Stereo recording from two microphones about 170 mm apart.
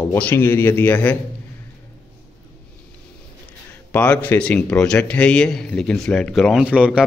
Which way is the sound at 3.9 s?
10° left (ahead or behind).